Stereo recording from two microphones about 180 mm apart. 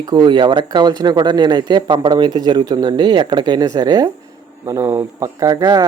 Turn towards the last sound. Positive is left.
turn(degrees=-20)  # may be behind; listen again after turning